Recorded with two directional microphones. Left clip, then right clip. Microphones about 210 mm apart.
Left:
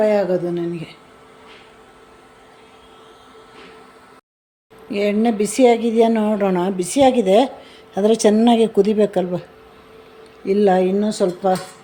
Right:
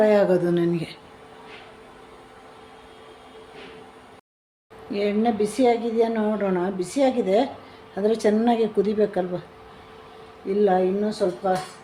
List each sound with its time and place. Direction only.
0.0 s speech: centre (ahead or behind)
4.9 s a woman's voice: 25° left (ahead or behind)
10.4 s a woman's voice: 40° left (ahead or behind)